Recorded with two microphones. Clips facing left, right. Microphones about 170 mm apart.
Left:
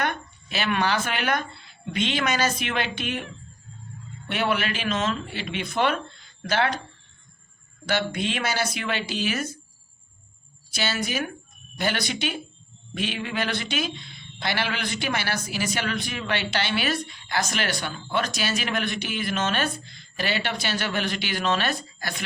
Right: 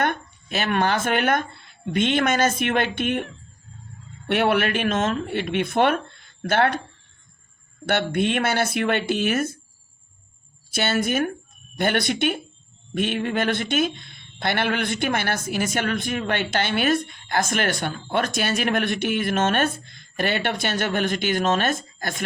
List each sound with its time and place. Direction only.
0.0 s speech: 50° right (ahead or behind)
4.3 s speech: 60° right (ahead or behind)
7.9 s speech: 55° right (ahead or behind)
10.7 s speech: 55° right (ahead or behind)